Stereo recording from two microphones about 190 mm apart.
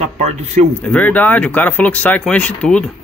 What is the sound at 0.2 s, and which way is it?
Speech, 35° right (ahead or behind).